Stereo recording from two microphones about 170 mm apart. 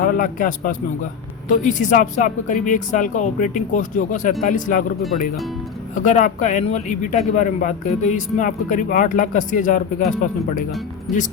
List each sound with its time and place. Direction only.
0.0 s a man's voice: 50° left (ahead or behind)
5.9 s a man's voice: 50° left (ahead or behind)
11.1 s speech: centre (ahead or behind)